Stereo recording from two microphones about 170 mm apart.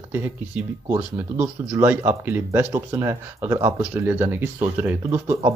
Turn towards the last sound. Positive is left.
turn(degrees=-15)  # may be behind; listen again after turning